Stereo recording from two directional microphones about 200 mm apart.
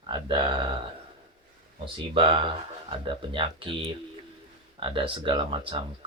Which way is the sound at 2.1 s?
25° right (ahead or behind).